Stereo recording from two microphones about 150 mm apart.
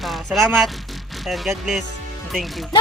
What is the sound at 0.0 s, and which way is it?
Speech, centre (ahead or behind).